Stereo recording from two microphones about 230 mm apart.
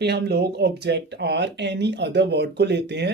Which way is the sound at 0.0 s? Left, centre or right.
Right.